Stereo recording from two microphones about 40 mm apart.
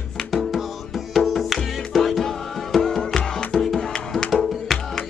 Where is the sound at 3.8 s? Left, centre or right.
Centre.